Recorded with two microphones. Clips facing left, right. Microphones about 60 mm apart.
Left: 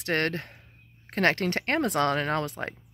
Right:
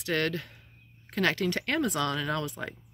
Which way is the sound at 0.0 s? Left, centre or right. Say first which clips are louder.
Left 2 dB; left.